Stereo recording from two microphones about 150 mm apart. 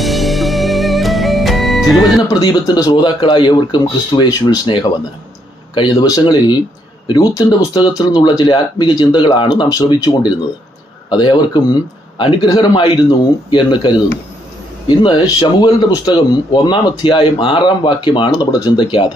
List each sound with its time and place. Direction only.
0.0 s music: centre (ahead or behind)
2.2 s speech: 30° left (ahead or behind)